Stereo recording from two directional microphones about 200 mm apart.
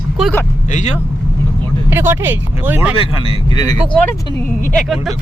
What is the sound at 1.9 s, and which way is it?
Speech, 10° right (ahead or behind).